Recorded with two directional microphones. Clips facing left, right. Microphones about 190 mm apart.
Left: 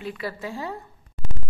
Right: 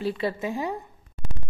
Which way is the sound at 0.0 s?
30° right (ahead or behind).